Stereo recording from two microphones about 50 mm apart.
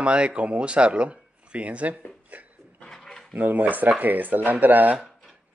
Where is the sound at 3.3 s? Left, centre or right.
Right.